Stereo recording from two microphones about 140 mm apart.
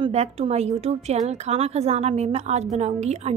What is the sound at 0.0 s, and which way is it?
A woman's voice, 50° right (ahead or behind).